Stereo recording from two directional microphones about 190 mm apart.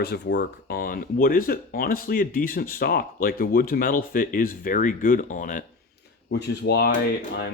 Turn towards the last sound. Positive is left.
turn(degrees=65)  # may be behind; listen again after turning